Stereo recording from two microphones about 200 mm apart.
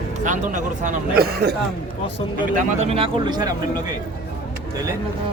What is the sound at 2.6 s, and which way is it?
Speech, 35° right (ahead or behind).